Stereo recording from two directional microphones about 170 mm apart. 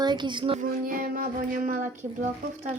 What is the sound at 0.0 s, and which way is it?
Child singing, 25° right (ahead or behind).